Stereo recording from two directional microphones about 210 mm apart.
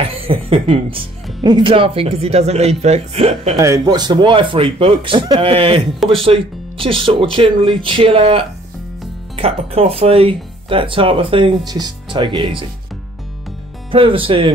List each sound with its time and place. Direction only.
0.0 s music: 25° right (ahead or behind)
1.4 s speech: 20° right (ahead or behind)
3.5 s speech: 15° right (ahead or behind)
13.9 s speech: 25° right (ahead or behind)